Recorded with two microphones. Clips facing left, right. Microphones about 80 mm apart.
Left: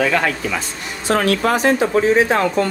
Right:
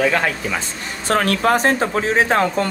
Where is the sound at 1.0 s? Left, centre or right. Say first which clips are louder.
Even; right.